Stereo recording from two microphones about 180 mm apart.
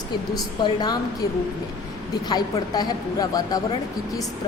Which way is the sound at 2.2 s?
20° left (ahead or behind).